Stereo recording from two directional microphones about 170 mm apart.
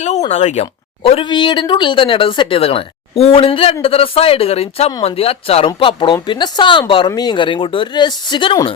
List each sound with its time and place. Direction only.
0.0 s speech: 40° left (ahead or behind)